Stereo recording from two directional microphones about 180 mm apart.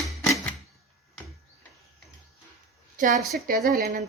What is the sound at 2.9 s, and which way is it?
Speech, 45° right (ahead or behind).